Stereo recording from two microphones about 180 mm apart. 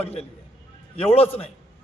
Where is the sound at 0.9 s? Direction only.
35° left (ahead or behind).